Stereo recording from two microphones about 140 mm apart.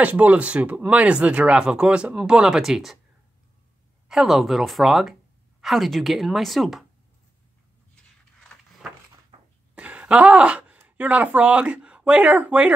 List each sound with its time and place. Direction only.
0.0 s speech: 10° right (ahead or behind)
4.1 s a woman's voice: centre (ahead or behind)
9.3 s cough: 45° right (ahead or behind)
9.8 s speech: 10° right (ahead or behind)